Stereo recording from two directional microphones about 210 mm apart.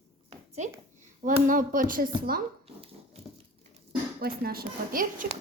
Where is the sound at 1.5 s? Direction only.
40° right (ahead or behind).